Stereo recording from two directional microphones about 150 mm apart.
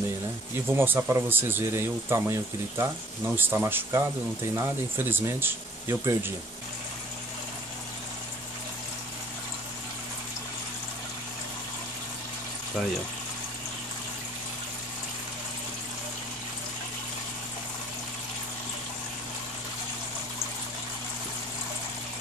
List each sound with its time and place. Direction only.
0.7 s speech: 15° right (ahead or behind)